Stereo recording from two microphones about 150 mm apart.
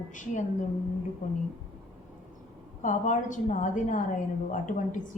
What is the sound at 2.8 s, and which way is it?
A woman's voice, 55° left (ahead or behind).